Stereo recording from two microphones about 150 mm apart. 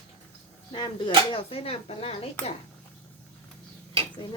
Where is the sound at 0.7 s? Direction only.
30° left (ahead or behind).